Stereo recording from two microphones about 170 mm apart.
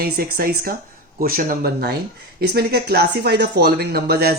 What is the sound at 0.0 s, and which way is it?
Speech, 65° right (ahead or behind).